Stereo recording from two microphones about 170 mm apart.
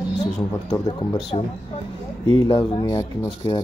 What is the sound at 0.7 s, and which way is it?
Speech, 25° left (ahead or behind).